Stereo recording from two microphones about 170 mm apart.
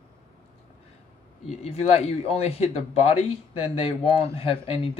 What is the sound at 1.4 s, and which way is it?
Speech, 35° left (ahead or behind).